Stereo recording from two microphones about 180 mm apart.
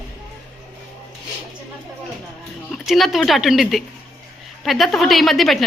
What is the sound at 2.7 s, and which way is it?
A woman's voice, centre (ahead or behind).